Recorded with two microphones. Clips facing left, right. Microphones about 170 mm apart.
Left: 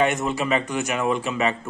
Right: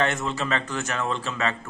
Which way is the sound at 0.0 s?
15° left (ahead or behind).